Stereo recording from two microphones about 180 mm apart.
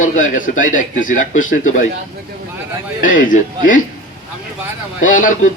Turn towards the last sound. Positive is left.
turn(degrees=45)  # may be behind; listen again after turning